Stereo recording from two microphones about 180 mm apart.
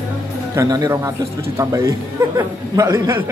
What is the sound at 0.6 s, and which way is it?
A man's voice, 20° right (ahead or behind).